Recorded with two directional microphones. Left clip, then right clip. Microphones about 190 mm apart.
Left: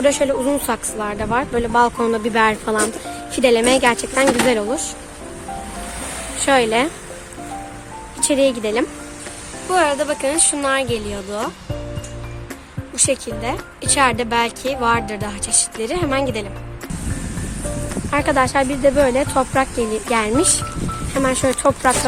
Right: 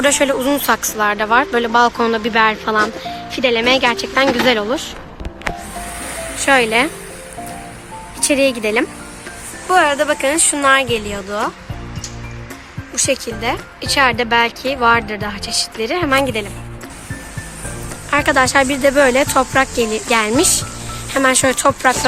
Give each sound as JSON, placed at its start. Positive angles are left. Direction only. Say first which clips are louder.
{"t": 0.0, "sound": "speech", "louder": "right 2 dB", "side_deg": 0}
{"t": 3.3, "sound": "speech", "louder": "even", "side_deg": 25}
{"t": 6.4, "sound": "speech", "louder": "right 2 dB", "side_deg": 5}
{"t": 8.2, "sound": "speech", "louder": "right 2 dB", "side_deg": 0}
{"t": 13.0, "sound": "speech", "louder": "right 2 dB", "side_deg": 0}
{"t": 18.1, "sound": "speech", "louder": "right 4 dB", "side_deg": 0}